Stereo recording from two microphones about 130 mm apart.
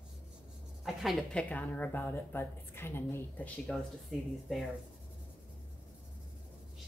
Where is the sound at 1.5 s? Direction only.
10° left (ahead or behind).